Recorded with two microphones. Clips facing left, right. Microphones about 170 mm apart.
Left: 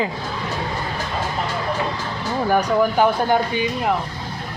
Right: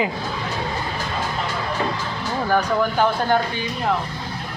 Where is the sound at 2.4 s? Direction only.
10° left (ahead or behind).